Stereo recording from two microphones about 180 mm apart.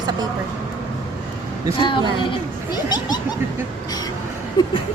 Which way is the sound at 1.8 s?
25° left (ahead or behind).